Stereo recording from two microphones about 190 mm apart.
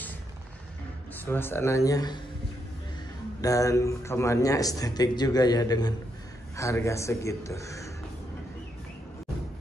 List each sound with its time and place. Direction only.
1.2 s a man's voice: 10° left (ahead or behind)
3.3 s a man's voice: 15° left (ahead or behind)